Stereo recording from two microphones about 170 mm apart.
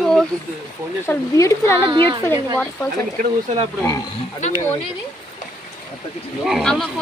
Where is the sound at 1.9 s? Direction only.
30° right (ahead or behind).